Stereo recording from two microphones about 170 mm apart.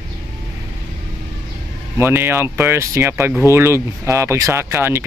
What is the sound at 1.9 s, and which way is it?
Speech, 15° right (ahead or behind).